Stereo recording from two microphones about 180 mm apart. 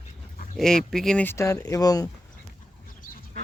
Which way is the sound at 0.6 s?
5° left (ahead or behind).